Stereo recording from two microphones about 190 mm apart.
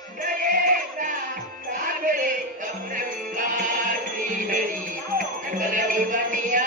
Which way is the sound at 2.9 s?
45° right (ahead or behind).